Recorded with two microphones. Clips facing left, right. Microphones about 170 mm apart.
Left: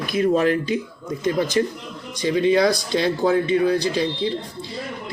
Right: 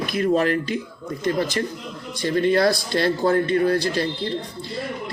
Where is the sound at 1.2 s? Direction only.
15° left (ahead or behind).